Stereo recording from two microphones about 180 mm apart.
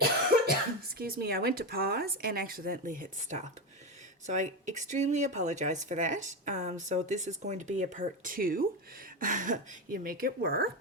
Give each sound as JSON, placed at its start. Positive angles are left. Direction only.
{"t": 0.3, "sound": "cough", "side_deg": -55}
{"t": 0.9, "sound": "speech", "side_deg": -60}